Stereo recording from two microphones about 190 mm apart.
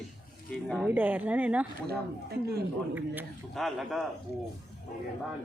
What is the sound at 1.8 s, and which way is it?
Speech, 55° right (ahead or behind).